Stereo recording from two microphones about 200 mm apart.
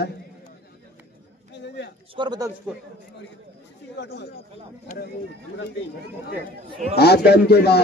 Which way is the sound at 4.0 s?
55° left (ahead or behind).